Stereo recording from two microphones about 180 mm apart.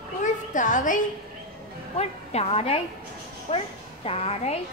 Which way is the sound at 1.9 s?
35° left (ahead or behind).